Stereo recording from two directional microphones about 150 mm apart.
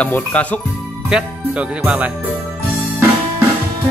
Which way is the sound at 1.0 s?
5° right (ahead or behind).